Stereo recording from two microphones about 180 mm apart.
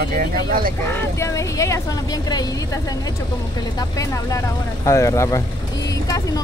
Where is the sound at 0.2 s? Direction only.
55° right (ahead or behind).